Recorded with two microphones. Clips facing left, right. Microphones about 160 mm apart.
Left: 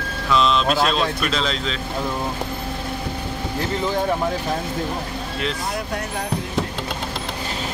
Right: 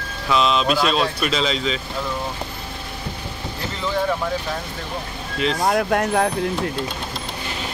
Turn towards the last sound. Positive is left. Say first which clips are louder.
# right 8 dB
turn(degrees=-60)  # may be behind; listen again after turning